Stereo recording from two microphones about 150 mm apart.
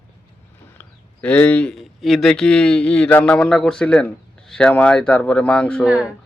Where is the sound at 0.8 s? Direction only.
10° left (ahead or behind).